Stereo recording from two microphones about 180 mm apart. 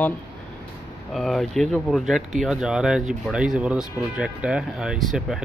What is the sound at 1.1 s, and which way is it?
Speech, centre (ahead or behind).